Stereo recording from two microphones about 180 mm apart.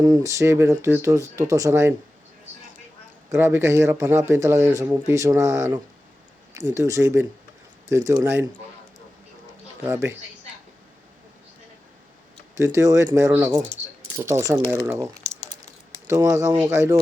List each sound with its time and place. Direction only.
0.0 s speech: 20° right (ahead or behind)
3.2 s speech: 15° right (ahead or behind)
9.8 s speech: 15° right (ahead or behind)
12.5 s speech: 15° right (ahead or behind)